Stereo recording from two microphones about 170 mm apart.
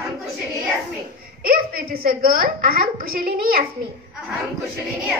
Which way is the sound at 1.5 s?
60° right (ahead or behind).